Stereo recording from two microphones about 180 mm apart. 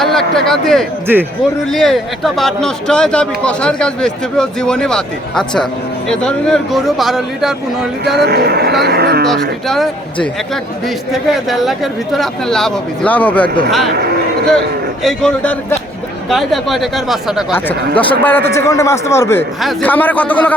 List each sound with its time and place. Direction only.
0.0 s a man's voice: centre (ahead or behind)
8.2 s speech: 60° right (ahead or behind)
9.2 s a man's voice: centre (ahead or behind)
15.0 s a man's voice: 5° left (ahead or behind)
17.5 s a man's voice: 10° left (ahead or behind)